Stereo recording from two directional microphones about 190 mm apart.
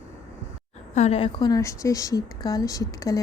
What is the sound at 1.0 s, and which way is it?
A woman's voice, 30° left (ahead or behind).